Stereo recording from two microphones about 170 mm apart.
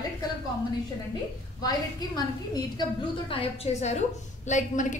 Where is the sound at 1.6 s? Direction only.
25° left (ahead or behind).